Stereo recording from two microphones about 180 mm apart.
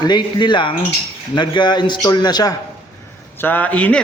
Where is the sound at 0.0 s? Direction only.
25° left (ahead or behind).